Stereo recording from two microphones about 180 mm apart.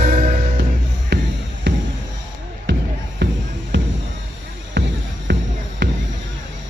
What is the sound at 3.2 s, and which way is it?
Music, 75° right (ahead or behind).